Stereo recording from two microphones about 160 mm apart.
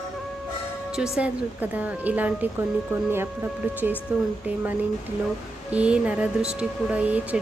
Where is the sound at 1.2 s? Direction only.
10° right (ahead or behind).